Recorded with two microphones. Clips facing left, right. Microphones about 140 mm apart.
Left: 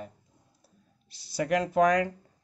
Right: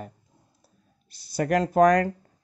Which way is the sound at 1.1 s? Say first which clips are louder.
Right 3 dB; 45° right (ahead or behind).